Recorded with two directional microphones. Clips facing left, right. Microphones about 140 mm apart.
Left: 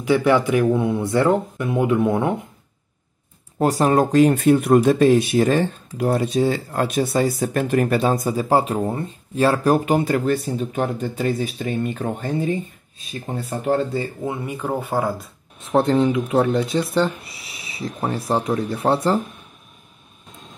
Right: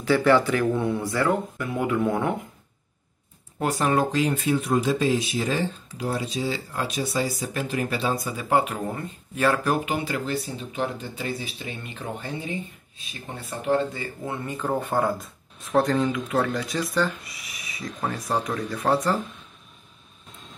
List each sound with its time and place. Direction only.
0.0 s speech: 15° left (ahead or behind)
3.5 s speech: 35° left (ahead or behind)
14.2 s speech: 15° left (ahead or behind)
15.6 s speech: 25° left (ahead or behind)